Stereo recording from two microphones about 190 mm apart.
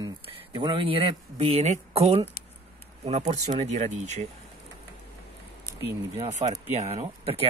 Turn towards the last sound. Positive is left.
turn(degrees=-35)  # may be behind; listen again after turning